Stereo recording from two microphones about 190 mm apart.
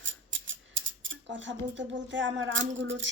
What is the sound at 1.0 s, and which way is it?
Speech, 75° right (ahead or behind).